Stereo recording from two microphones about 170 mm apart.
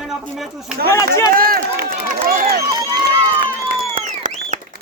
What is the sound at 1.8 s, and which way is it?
Run, 60° right (ahead or behind).